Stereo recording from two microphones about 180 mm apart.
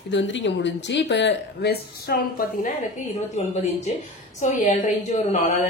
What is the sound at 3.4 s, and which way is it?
Speech, 35° left (ahead or behind).